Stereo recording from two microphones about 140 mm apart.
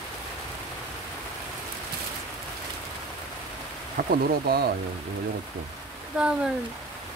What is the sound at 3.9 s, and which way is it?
Speech, 90° right.